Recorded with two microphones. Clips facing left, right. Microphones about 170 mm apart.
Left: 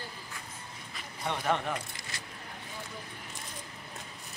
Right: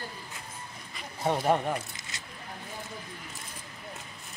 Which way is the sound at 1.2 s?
40° right (ahead or behind).